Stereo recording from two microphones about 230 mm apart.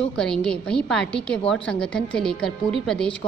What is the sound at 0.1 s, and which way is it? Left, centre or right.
A woman's voice, centre.